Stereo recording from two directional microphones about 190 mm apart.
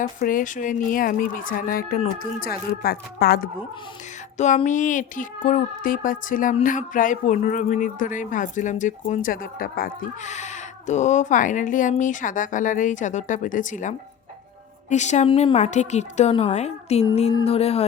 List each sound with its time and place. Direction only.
0.2 s speech: 45° left (ahead or behind)
4.4 s a woman's voice: 40° left (ahead or behind)